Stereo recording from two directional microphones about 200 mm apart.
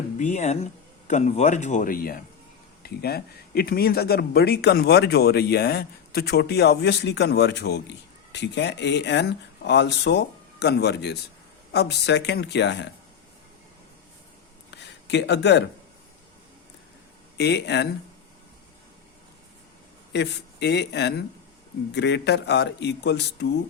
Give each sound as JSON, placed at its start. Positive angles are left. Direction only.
{"t": 0.2, "sound": "speech", "side_deg": 35}
{"t": 14.8, "sound": "speech", "side_deg": 60}
{"t": 17.3, "sound": "speech", "side_deg": 55}
{"t": 20.1, "sound": "speech", "side_deg": 60}